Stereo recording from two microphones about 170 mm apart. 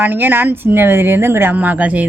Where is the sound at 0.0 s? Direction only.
10° right (ahead or behind).